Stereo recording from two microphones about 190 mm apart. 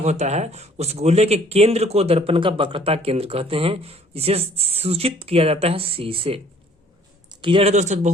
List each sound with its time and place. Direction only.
0.0 s speech: 35° right (ahead or behind)